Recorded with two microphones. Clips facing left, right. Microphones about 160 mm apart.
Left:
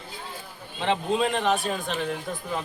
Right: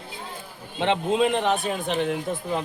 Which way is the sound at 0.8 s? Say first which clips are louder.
Right 3 dB; 20° right (ahead or behind).